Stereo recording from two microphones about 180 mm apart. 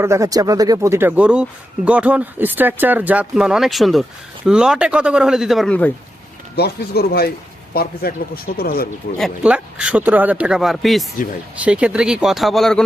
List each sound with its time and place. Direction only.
0.0 s speech: 15° right (ahead or behind); by 5.9 s 5° left (ahead or behind)
6.6 s speech: 60° left (ahead or behind)
9.1 s speech: 5° right (ahead or behind)